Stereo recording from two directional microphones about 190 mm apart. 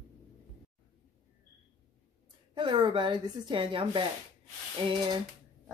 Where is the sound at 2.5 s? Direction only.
25° right (ahead or behind).